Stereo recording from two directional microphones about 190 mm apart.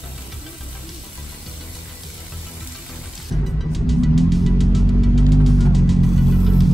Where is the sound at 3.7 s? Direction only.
Centre (ahead or behind).